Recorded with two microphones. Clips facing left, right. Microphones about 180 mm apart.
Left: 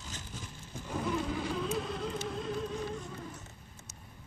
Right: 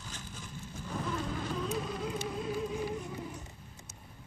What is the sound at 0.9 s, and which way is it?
Insect, 10° left (ahead or behind).